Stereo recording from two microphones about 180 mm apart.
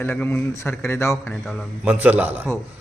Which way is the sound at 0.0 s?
10° left (ahead or behind).